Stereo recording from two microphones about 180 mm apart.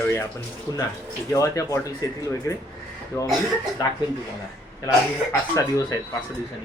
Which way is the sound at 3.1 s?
15° left (ahead or behind).